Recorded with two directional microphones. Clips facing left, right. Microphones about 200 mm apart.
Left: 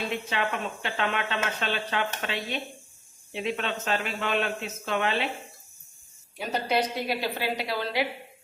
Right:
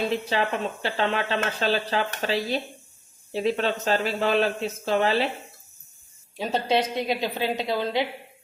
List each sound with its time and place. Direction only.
0.1 s speech: 35° right (ahead or behind)
6.3 s a woman's voice: 25° right (ahead or behind)